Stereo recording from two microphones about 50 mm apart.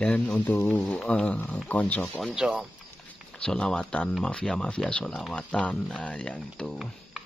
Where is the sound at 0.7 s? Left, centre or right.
Left.